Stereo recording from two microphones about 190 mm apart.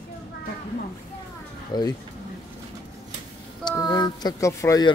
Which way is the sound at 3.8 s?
20° left (ahead or behind).